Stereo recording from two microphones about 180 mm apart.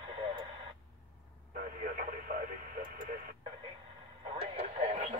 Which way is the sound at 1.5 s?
50° right (ahead or behind).